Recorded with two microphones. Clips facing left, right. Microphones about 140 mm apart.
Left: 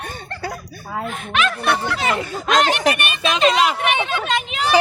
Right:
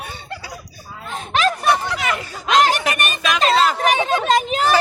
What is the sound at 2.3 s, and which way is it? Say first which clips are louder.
Speech: right 3 dB; 50° left (ahead or behind).